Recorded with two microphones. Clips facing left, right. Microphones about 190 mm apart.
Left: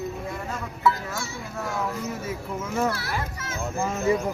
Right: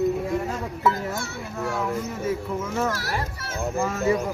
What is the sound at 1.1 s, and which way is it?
Speech, 60° right (ahead or behind).